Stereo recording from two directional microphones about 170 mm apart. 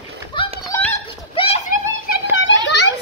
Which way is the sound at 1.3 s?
35° left (ahead or behind).